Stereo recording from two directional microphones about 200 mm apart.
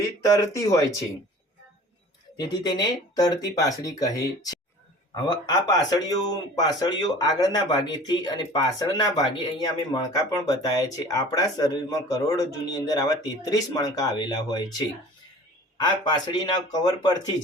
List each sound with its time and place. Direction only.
0.5 s speech: 15° left (ahead or behind)
2.4 s speech: 20° left (ahead or behind)